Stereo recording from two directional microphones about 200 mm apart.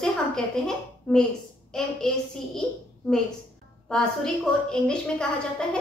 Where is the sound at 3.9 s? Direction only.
5° left (ahead or behind).